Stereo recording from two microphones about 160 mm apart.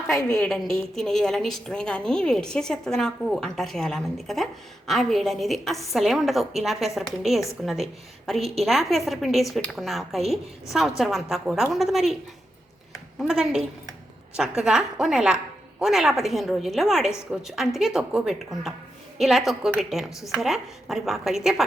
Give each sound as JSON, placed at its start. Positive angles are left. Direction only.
{"t": 0.3, "sound": "a woman's voice", "side_deg": 5}
{"t": 13.1, "sound": "a woman's voice", "side_deg": -5}